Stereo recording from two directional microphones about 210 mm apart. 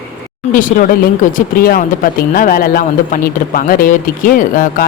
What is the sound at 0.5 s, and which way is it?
A woman's voice, 40° left (ahead or behind).